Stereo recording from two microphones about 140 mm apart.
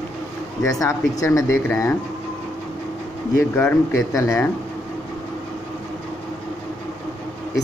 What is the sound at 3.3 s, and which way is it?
Speech, 15° left (ahead or behind).